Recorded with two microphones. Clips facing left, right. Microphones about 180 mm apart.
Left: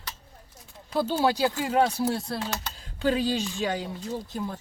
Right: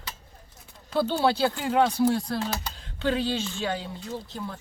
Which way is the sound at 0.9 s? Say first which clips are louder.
Right 1 dB; 10° left (ahead or behind).